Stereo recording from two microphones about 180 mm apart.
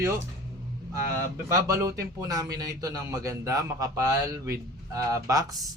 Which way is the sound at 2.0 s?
20° right (ahead or behind).